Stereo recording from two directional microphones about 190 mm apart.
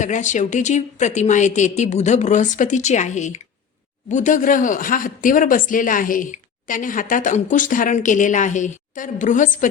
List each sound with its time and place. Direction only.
0.0 s a woman's voice: 40° left (ahead or behind)